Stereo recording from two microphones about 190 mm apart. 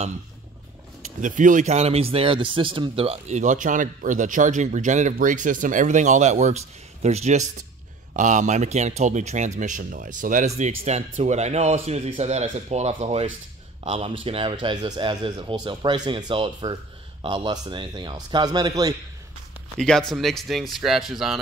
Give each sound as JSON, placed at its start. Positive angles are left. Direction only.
{"t": 1.2, "sound": "speech", "side_deg": -40}
{"t": 19.8, "sound": "speech", "side_deg": 5}